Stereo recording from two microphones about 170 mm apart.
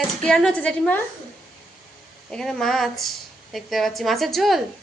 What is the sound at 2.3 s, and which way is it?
A woman's voice, 5° left (ahead or behind).